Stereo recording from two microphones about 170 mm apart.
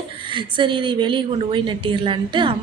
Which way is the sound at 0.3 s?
30° right (ahead or behind).